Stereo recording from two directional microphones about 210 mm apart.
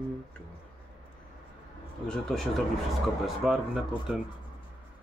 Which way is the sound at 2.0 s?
Centre (ahead or behind).